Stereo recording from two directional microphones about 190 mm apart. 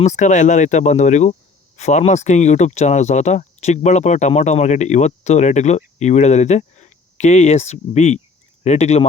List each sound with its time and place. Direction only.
0.0 s speech: 40° left (ahead or behind)